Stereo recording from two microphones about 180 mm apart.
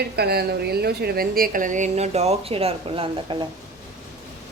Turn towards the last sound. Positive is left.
turn(degrees=-30)  # may be behind; listen again after turning